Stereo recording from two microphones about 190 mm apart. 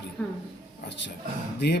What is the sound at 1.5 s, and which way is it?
Speech, 60° left (ahead or behind).